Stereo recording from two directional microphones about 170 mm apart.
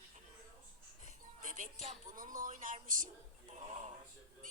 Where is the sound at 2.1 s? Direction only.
55° right (ahead or behind).